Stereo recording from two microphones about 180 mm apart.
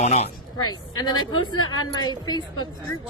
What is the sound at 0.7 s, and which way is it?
A woman's voice, 25° left (ahead or behind).